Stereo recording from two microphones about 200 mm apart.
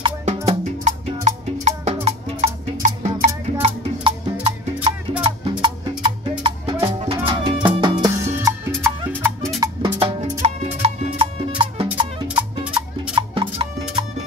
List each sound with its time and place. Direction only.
0.0 s music: 30° right (ahead or behind); by 8.5 s 15° right (ahead or behind)
9.6 s music: 20° right (ahead or behind)